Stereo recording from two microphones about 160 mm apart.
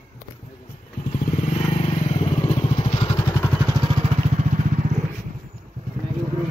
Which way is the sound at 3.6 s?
25° right (ahead or behind).